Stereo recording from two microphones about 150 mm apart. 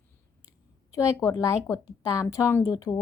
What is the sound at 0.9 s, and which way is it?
A woman's voice, 20° left (ahead or behind).